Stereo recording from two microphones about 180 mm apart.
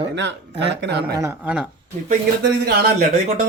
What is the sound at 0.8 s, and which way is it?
Speech, 65° right (ahead or behind).